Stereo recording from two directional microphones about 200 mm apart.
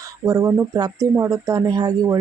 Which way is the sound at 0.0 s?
15° right (ahead or behind).